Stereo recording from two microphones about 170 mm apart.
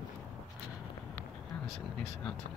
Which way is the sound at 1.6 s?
35° left (ahead or behind).